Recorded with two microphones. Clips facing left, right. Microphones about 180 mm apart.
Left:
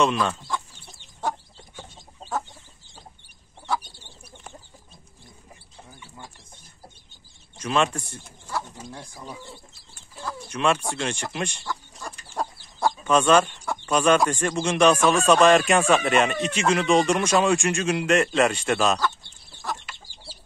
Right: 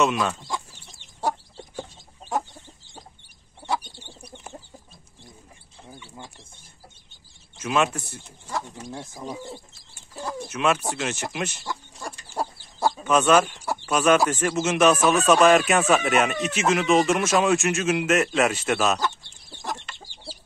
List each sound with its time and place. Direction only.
0.0 s speech: 10° right (ahead or behind)
7.5 s speech: 5° right (ahead or behind)
8.9 s speech: 20° right (ahead or behind)
9.3 s speech: 40° right (ahead or behind)
10.5 s speech: 5° right (ahead or behind)
11.6 s chicken: 10° right (ahead or behind)
13.0 s speech: 5° right (ahead or behind)